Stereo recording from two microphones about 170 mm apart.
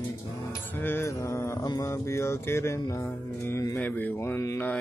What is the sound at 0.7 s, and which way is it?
Speech, 10° left (ahead or behind).